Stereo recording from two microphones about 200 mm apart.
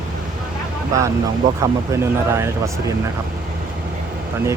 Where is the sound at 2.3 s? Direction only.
15° right (ahead or behind).